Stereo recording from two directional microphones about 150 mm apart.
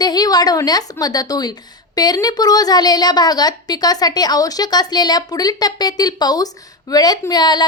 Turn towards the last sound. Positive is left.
turn(degrees=30)  # may be behind; listen again after turning